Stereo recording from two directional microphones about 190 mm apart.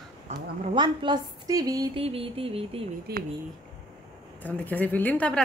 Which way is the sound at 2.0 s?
30° right (ahead or behind).